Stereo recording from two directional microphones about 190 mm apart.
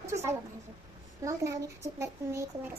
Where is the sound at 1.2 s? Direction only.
15° right (ahead or behind).